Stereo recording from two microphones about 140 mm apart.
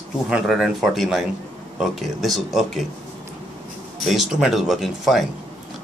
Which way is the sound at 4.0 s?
Centre (ahead or behind).